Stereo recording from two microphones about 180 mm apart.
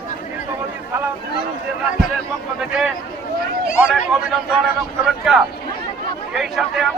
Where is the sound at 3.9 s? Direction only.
5° right (ahead or behind).